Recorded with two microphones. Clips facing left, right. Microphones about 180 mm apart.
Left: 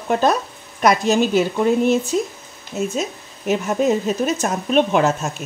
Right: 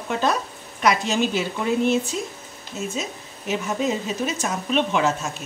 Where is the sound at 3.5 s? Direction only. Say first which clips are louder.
Left 6 dB; 50° left (ahead or behind).